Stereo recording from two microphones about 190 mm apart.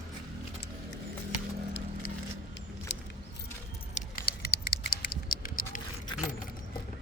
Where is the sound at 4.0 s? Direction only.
50° left (ahead or behind).